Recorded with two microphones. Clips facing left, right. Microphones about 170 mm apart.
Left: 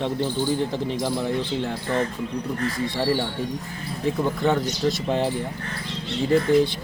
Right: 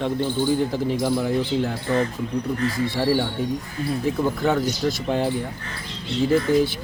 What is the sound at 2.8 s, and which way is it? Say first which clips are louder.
Speech: right 2 dB; centre (ahead or behind).